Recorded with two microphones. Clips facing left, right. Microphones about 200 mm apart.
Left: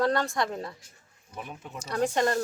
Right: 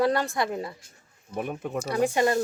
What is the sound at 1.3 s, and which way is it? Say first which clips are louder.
Speech: right 9 dB; 55° right (ahead or behind).